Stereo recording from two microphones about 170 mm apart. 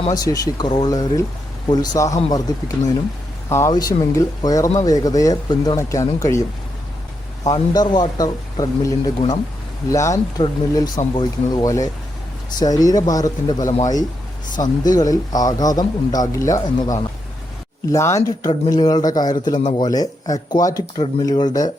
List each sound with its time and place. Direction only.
0.1 s a man's voice: 20° left (ahead or behind)
7.4 s a man's voice: 25° left (ahead or behind)
14.8 s a man's voice: 20° left (ahead or behind)